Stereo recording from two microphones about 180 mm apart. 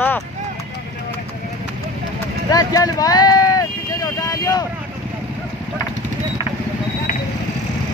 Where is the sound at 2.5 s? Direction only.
20° left (ahead or behind).